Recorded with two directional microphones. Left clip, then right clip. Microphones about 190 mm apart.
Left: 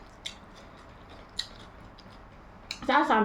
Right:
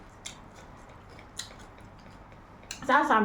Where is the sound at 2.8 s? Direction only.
15° left (ahead or behind).